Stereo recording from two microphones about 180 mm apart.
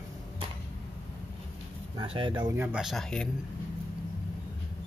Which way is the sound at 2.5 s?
10° right (ahead or behind).